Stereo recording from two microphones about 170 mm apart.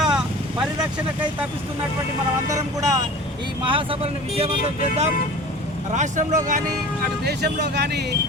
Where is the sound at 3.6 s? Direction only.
30° right (ahead or behind).